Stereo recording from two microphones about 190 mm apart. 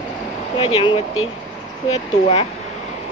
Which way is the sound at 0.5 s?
30° left (ahead or behind).